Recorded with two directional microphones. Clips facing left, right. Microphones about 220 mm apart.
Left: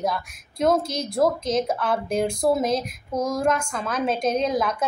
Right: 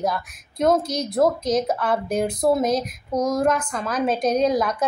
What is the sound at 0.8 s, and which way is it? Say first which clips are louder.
Speech: right 3 dB; 30° left (ahead or behind).